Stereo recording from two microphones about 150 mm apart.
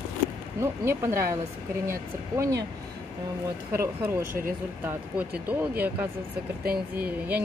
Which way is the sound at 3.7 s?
15° right (ahead or behind).